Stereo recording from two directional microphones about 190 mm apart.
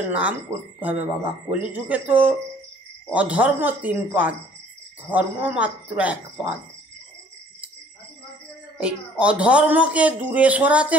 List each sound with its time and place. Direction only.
0.0 s speech: 5° right (ahead or behind)
8.7 s speech: 5° right (ahead or behind)